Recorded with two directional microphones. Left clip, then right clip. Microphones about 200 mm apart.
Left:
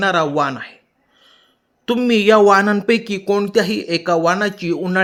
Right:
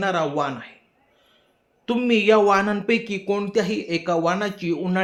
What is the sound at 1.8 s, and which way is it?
Speech, 40° left (ahead or behind).